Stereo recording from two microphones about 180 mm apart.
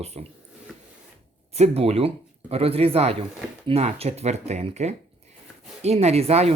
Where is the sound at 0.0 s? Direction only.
35° right (ahead or behind).